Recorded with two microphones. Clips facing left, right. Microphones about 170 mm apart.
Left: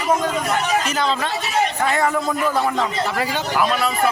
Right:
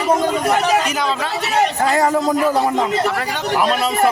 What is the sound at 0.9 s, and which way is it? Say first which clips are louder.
Speech: right 1 dB; 10° right (ahead or behind).